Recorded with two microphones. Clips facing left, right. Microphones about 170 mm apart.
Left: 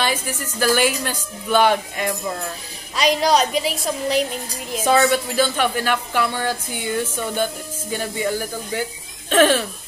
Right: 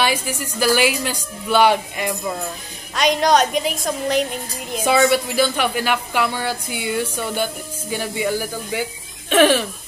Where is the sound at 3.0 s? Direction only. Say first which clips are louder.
Right 1 dB; 5° left (ahead or behind).